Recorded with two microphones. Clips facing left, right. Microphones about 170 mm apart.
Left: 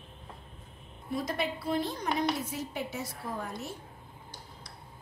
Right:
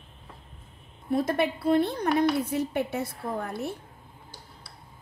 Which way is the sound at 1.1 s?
55° right (ahead or behind).